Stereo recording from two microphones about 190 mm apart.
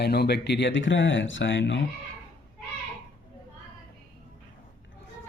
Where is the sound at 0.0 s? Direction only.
60° left (ahead or behind); by 1.8 s 75° left (ahead or behind).